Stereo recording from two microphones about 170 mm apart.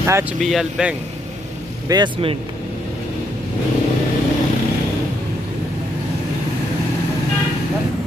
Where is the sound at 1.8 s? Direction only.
25° right (ahead or behind).